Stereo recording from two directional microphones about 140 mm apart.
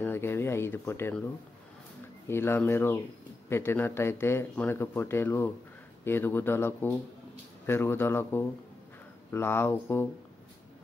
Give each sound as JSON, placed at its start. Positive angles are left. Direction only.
{"t": 0.0, "sound": "speech", "side_deg": 15}
{"t": 2.2, "sound": "speech", "side_deg": 15}